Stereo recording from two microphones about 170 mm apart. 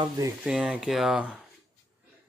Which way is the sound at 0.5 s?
5° right (ahead or behind).